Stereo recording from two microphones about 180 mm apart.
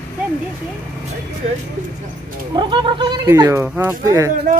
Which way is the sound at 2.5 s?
25° right (ahead or behind).